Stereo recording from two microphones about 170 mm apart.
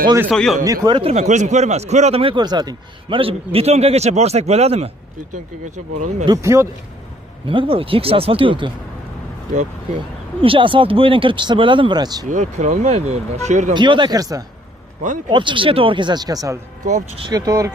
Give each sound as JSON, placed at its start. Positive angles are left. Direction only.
{"t": 0.3, "sound": "a man's voice", "side_deg": 0}
{"t": 0.7, "sound": "speech", "side_deg": -25}
{"t": 1.1, "sound": "a man's voice", "side_deg": -45}
{"t": 6.2, "sound": "speech", "side_deg": -20}
{"t": 7.4, "sound": "a man's voice", "side_deg": -30}
{"t": 10.4, "sound": "speech", "side_deg": -30}
{"t": 12.3, "sound": "a man's voice", "side_deg": -45}
{"t": 13.7, "sound": "speech", "side_deg": -25}
{"t": 16.8, "sound": "speech", "side_deg": -45}
{"t": 17.2, "sound": "speech", "side_deg": -20}